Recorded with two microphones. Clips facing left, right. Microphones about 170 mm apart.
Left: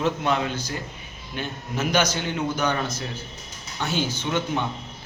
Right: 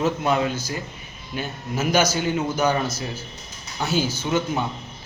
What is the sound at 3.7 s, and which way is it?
Speech, 40° right (ahead or behind).